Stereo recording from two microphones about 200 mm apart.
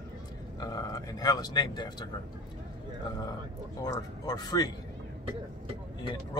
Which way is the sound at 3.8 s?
20° left (ahead or behind).